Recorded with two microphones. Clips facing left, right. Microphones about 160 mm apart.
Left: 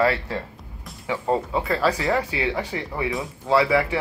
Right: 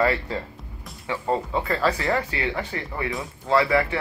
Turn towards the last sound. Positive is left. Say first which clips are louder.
# left 1 dB
turn(degrees=10)  # may be behind; listen again after turning